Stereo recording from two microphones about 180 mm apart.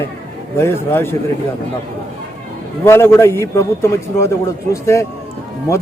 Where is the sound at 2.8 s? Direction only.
15° left (ahead or behind).